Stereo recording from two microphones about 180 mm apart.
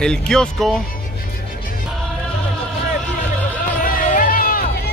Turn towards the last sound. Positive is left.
turn(degrees=55)  # may be behind; listen again after turning